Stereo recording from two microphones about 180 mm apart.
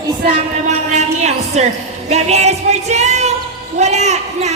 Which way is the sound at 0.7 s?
40° right (ahead or behind).